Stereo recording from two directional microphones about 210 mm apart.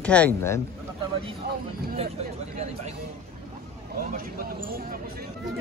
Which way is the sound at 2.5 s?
30° right (ahead or behind).